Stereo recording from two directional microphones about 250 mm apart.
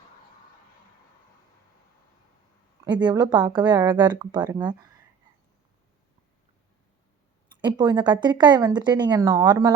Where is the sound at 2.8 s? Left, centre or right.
Centre.